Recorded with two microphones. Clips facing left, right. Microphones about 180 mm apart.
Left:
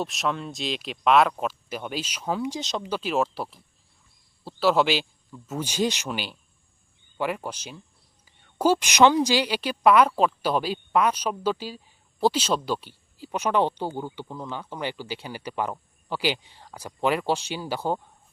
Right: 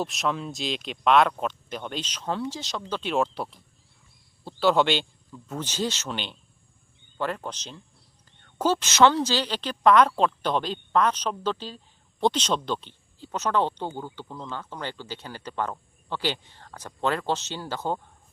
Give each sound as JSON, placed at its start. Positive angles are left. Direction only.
{"t": 0.0, "sound": "speech", "side_deg": 0}
{"t": 3.0, "sound": "speech", "side_deg": 0}